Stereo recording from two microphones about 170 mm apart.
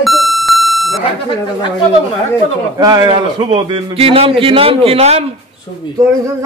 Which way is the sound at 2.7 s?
20° right (ahead or behind).